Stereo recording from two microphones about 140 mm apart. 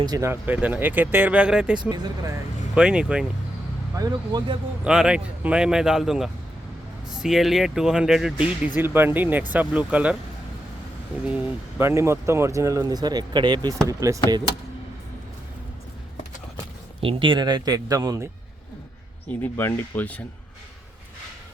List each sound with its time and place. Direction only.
0.0 s speech: 30° right (ahead or behind)
0.3 s speech: 10° right (ahead or behind)
1.9 s speech: 25° right (ahead or behind)
2.7 s speech: 5° right (ahead or behind)
3.9 s speech: 25° right (ahead or behind)
4.8 s speech: 5° right (ahead or behind)
11.3 s speech: 15° right (ahead or behind)
17.0 s speech: 40° right (ahead or behind)
19.3 s speech: 15° left (ahead or behind)